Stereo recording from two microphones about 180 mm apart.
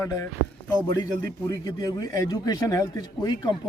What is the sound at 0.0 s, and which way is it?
Speech, 20° left (ahead or behind).